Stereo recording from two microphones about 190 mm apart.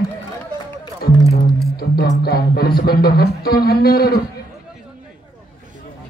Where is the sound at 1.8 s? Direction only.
55° left (ahead or behind).